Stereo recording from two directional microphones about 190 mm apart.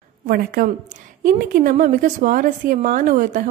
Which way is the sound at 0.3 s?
50° right (ahead or behind).